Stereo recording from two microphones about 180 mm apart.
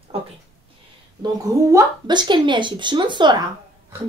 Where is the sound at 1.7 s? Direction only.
25° right (ahead or behind).